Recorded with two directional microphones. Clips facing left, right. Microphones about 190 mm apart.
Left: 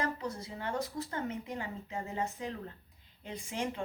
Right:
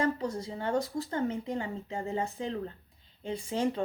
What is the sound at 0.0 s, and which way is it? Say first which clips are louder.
A woman's voice: right 6 dB; 30° right (ahead or behind).